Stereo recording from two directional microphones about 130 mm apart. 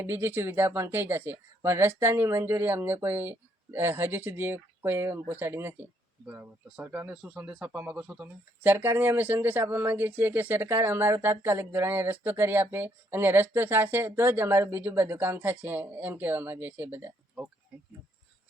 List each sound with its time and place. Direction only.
0.0 s speech: 20° right (ahead or behind)